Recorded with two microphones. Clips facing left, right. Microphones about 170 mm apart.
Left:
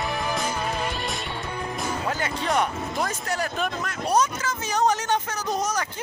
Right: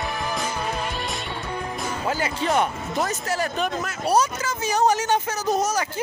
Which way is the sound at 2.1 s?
5° right (ahead or behind).